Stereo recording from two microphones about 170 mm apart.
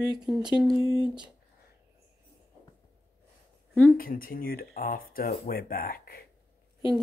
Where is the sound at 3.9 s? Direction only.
55° left (ahead or behind).